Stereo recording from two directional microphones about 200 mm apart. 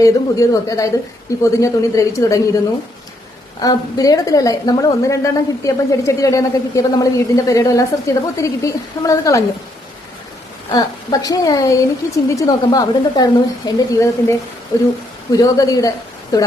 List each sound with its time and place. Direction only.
0.0 s a woman's voice: 15° left (ahead or behind)
3.6 s a woman's voice: 20° left (ahead or behind)
10.7 s a woman's voice: 20° left (ahead or behind)